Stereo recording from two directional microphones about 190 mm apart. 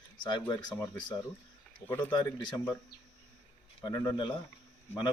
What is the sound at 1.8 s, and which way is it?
Speech, 10° left (ahead or behind).